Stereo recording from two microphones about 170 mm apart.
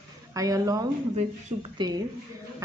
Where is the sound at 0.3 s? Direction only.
20° right (ahead or behind).